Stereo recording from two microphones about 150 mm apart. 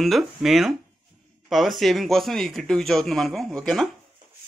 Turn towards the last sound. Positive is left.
turn(degrees=0)  # may be behind; listen again after turning